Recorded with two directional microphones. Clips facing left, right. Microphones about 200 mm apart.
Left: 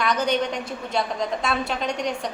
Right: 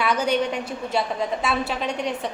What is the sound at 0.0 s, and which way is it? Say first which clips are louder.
A woman's voice: right 1 dB; 5° right (ahead or behind).